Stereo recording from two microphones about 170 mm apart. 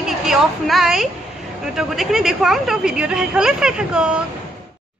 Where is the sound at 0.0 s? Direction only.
Centre (ahead or behind).